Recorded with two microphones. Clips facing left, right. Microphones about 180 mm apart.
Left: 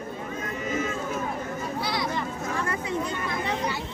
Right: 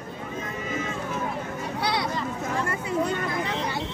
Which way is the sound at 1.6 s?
70° right (ahead or behind).